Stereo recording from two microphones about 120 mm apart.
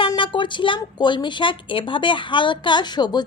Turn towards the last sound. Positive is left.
turn(degrees=35)  # may be behind; listen again after turning